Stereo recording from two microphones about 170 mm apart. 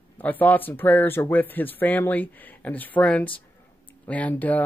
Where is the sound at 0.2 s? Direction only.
10° left (ahead or behind).